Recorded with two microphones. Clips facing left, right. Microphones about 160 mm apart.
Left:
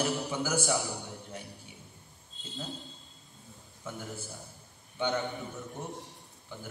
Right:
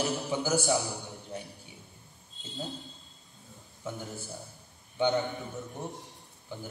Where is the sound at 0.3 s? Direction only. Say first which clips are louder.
Right 3 dB; 20° right (ahead or behind).